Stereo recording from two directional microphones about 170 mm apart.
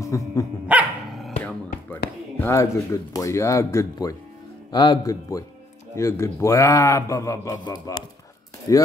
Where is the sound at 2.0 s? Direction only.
65° left (ahead or behind).